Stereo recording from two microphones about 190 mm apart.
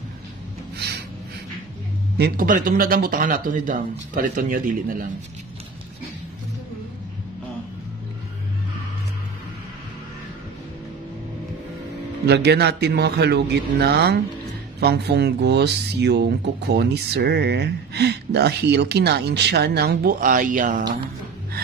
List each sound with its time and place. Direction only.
2.1 s speech: 50° right (ahead or behind)
12.3 s speech: 60° right (ahead or behind); by 20.8 s 45° right (ahead or behind)